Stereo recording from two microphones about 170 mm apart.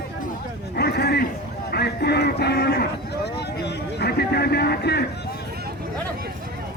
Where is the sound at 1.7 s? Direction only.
70° left (ahead or behind).